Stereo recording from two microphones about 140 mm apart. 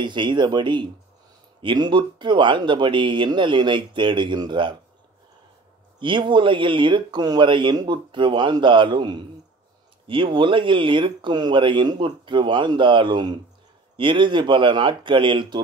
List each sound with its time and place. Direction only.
0.0 s speech: 35° right (ahead or behind)
5.9 s speech: 35° right (ahead or behind)